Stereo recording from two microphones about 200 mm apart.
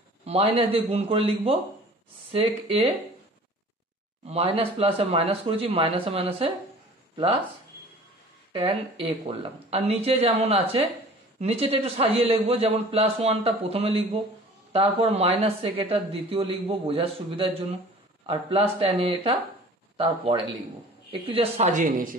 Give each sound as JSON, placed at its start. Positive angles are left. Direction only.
{"t": 0.2, "sound": "a woman's voice", "side_deg": -30}
{"t": 4.3, "sound": "a woman's voice", "side_deg": -30}
{"t": 8.5, "sound": "a woman's voice", "side_deg": -30}